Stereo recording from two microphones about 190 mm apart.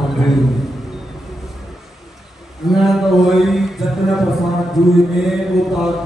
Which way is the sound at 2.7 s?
Centre (ahead or behind).